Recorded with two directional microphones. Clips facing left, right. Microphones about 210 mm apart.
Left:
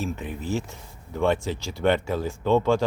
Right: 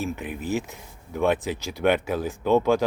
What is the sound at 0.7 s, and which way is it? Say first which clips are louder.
Speech: right 1 dB; 5° right (ahead or behind).